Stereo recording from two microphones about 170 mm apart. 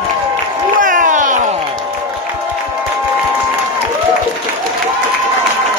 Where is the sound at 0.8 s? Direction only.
50° right (ahead or behind).